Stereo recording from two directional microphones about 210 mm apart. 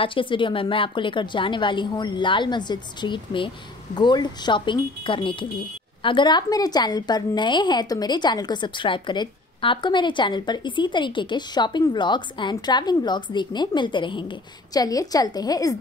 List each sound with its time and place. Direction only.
0.0 s a woman's voice: 25° left (ahead or behind)